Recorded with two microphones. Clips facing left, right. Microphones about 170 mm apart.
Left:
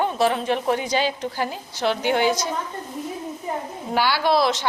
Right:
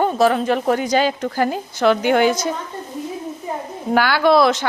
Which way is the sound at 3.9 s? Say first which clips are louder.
Right 5 dB; 50° right (ahead or behind).